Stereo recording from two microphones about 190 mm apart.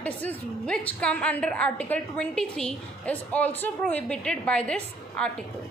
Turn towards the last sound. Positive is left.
turn(degrees=5)  # may be behind; listen again after turning